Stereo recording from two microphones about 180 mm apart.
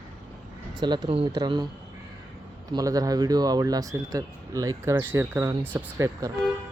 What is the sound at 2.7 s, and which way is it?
Speech, 20° right (ahead or behind).